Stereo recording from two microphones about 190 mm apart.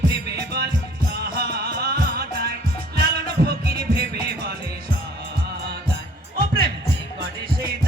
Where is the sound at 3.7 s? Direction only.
55° right (ahead or behind).